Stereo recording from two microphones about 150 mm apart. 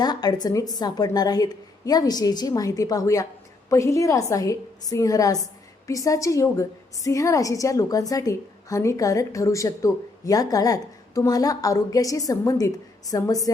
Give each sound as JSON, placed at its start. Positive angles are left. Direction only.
{"t": 0.0, "sound": "a woman's voice", "side_deg": 25}